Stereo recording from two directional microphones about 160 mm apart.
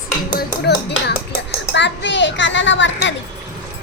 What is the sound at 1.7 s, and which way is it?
Speech, 90° left.